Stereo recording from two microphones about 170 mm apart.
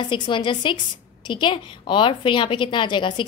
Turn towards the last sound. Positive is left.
turn(degrees=25)  # may be behind; listen again after turning